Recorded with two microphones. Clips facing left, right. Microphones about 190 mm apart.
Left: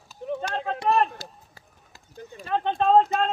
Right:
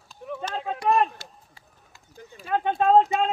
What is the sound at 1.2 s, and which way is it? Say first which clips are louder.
Run: left 4 dB; 35° left (ahead or behind).